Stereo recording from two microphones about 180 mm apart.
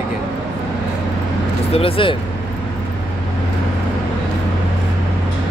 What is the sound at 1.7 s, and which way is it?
Speech, 30° left (ahead or behind).